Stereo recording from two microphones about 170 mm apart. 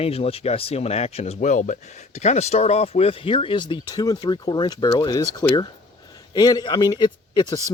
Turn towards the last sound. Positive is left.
turn(degrees=20)  # may be behind; listen again after turning